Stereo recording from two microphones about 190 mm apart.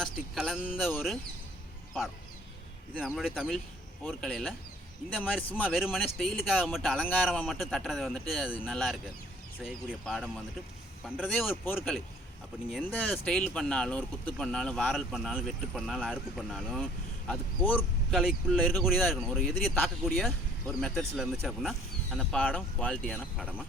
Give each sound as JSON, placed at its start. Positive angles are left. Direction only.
{"t": 0.0, "sound": "speech", "side_deg": 0}
{"t": 3.1, "sound": "speech", "side_deg": 0}
{"t": 12.7, "sound": "speech", "side_deg": 5}